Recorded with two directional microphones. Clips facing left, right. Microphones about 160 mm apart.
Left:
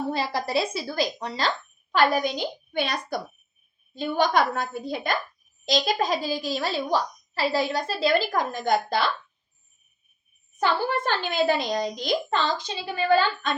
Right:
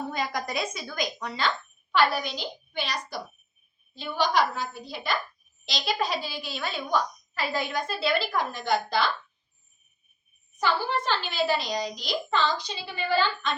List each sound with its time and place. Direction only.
0.1 s a woman's voice: 30° left (ahead or behind); by 8.7 s 45° left (ahead or behind)
10.6 s a woman's voice: 50° left (ahead or behind)